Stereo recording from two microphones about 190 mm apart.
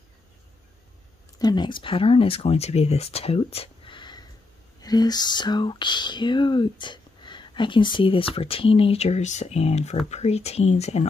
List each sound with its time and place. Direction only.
1.4 s speech: 20° left (ahead or behind)
4.8 s a sound: 20° left (ahead or behind)
10.0 s speech: 35° left (ahead or behind)